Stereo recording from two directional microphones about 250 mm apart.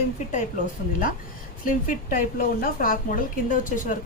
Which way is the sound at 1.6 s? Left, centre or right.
Left.